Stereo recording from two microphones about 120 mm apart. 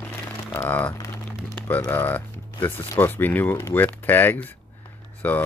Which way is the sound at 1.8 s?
15° left (ahead or behind).